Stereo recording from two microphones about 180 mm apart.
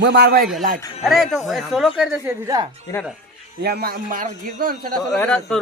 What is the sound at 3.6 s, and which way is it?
A man's voice, 60° right (ahead or behind).